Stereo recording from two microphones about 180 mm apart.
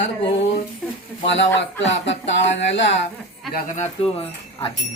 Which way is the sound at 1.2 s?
90° left.